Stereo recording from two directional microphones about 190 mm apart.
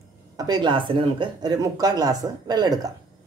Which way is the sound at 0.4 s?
20° right (ahead or behind).